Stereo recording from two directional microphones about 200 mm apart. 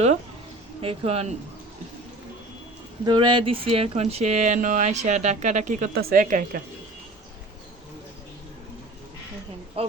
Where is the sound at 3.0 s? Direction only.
25° right (ahead or behind); by 6.6 s 45° right (ahead or behind).